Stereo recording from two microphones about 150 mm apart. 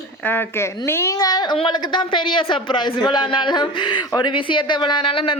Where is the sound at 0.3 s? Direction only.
15° left (ahead or behind).